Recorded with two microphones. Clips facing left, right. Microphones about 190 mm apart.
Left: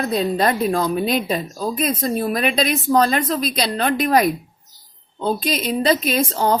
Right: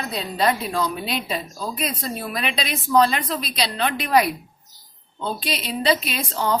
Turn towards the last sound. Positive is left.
turn(degrees=45)  # may be behind; listen again after turning